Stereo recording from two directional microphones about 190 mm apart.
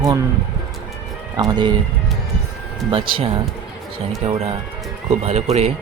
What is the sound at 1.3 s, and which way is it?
Speech, 20° right (ahead or behind).